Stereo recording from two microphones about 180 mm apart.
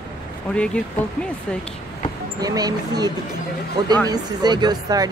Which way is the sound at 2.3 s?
20° right (ahead or behind).